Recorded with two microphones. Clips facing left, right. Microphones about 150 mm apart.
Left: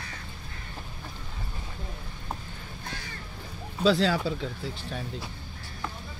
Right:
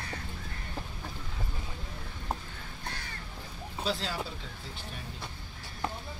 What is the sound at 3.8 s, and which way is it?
Speech, 90° left.